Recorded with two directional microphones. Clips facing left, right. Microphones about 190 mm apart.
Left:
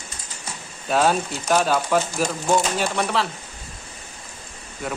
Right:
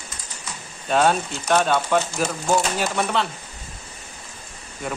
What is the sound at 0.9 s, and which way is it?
Speech, centre (ahead or behind).